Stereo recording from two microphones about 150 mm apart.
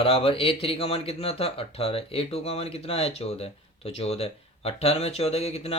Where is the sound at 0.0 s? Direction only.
40° left (ahead or behind).